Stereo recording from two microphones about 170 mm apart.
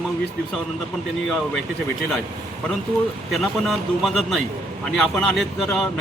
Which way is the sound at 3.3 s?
Centre (ahead or behind).